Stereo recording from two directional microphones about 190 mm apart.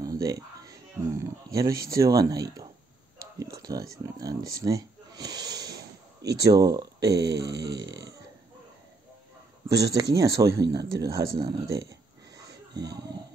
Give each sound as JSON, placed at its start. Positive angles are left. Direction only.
{"t": 0.0, "sound": "a sound", "side_deg": -15}
{"t": 1.9, "sound": "speech", "side_deg": -15}
{"t": 7.0, "sound": "speech", "side_deg": -60}
{"t": 10.1, "sound": "speech", "side_deg": -15}